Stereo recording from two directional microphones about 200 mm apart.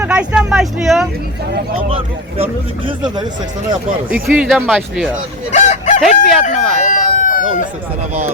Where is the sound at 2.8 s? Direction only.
20° right (ahead or behind).